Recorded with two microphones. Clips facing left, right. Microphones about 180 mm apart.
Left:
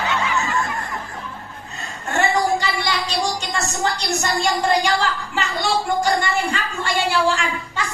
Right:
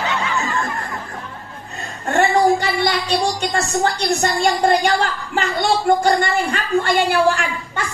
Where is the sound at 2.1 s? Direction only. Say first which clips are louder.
Right 4 dB; 55° right (ahead or behind).